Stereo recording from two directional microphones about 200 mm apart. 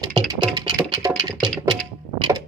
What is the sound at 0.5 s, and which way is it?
Music, 20° right (ahead or behind).